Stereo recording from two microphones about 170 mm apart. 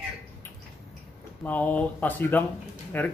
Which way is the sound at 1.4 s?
10° left (ahead or behind).